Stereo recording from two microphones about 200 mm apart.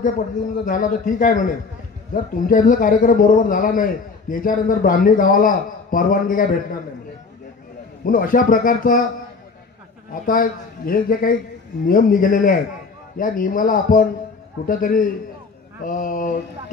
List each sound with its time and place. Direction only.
0.7 s a man's voice: 40° left (ahead or behind)
8.0 s a man's voice: 40° left (ahead or behind)
10.1 s a man's voice: 45° left (ahead or behind)
15.8 s a sound: 40° left (ahead or behind)